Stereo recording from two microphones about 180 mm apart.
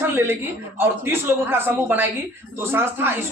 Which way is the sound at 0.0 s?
15° right (ahead or behind).